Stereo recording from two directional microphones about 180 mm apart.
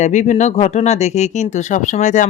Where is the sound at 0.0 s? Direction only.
40° left (ahead or behind).